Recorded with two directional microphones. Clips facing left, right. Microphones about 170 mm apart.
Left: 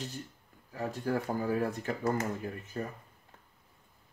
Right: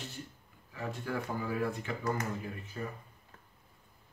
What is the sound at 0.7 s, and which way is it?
Speech, 40° left (ahead or behind).